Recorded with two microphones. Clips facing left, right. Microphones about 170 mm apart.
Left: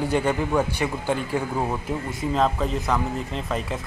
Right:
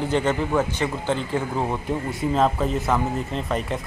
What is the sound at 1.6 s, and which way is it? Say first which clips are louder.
Speech: right 1 dB; centre (ahead or behind).